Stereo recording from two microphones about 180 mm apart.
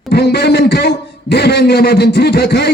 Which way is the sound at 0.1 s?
65° left (ahead or behind).